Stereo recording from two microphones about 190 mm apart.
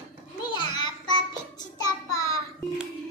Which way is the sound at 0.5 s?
25° left (ahead or behind).